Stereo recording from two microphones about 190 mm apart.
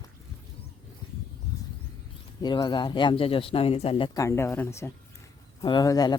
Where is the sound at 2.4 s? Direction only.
25° left (ahead or behind).